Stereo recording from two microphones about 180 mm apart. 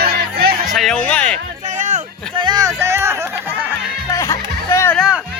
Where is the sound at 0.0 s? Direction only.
60° right (ahead or behind).